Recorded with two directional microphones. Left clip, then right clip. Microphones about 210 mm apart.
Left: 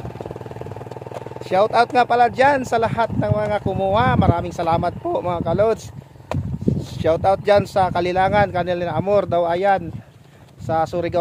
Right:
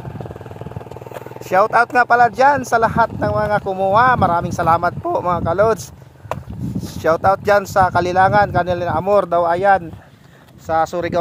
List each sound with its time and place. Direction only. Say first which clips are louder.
1.5 s speech: right 2 dB; 15° right (ahead or behind)
7.0 s speech: right 3 dB; 15° right (ahead or behind)